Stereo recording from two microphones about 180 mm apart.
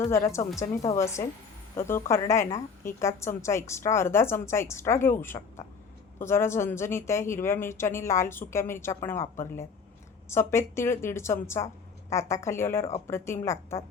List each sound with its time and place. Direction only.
0.1 s a woman's voice: 15° left (ahead or behind)